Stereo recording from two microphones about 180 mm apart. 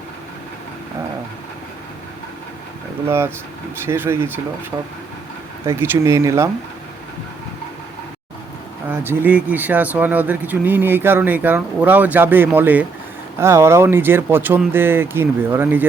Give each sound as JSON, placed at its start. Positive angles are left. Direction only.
{"t": 3.1, "sound": "speech", "side_deg": -15}
{"t": 5.6, "sound": "speech", "side_deg": -15}
{"t": 8.9, "sound": "speech", "side_deg": -10}